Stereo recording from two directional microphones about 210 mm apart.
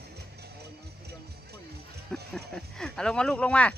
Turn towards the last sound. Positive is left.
turn(degrees=5)  # may be behind; listen again after turning